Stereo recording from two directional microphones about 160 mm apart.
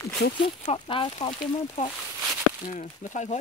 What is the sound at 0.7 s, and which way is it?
Speech, 30° left (ahead or behind).